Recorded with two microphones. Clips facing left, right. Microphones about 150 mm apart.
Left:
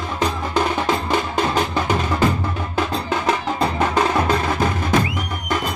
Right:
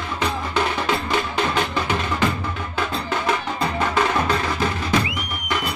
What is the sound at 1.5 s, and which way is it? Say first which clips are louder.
Music: left 3 dB; 40° left (ahead or behind).